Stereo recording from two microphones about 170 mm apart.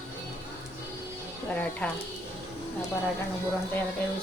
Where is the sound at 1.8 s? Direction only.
5° left (ahead or behind).